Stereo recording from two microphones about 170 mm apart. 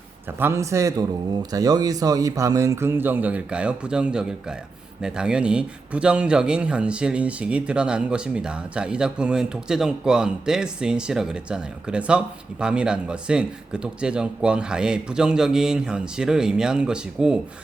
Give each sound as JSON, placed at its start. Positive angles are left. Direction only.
{"t": 0.3, "sound": "a man's voice", "side_deg": -15}